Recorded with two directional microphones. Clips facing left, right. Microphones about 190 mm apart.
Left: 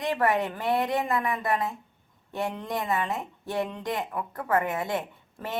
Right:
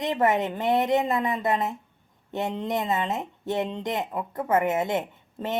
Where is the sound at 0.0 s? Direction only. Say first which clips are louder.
Right 2 dB; 20° right (ahead or behind).